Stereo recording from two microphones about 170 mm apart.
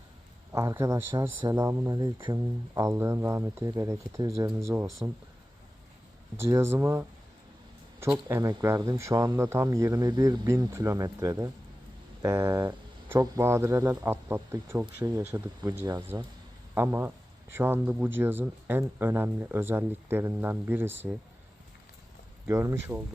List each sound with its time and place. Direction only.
0.5 s speech: 15° right (ahead or behind)
6.4 s speech: 15° right (ahead or behind)
22.4 s speech: 15° right (ahead or behind)